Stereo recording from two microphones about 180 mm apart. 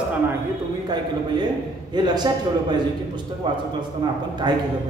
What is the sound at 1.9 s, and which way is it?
A man's voice, 25° right (ahead or behind).